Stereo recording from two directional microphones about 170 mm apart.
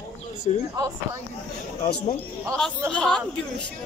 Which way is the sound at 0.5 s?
35° left (ahead or behind).